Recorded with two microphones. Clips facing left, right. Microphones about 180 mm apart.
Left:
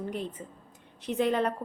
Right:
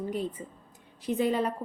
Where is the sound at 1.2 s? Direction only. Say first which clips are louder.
Left 1 dB; 5° right (ahead or behind).